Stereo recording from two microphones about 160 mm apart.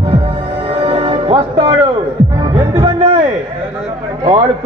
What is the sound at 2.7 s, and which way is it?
Music, 40° right (ahead or behind).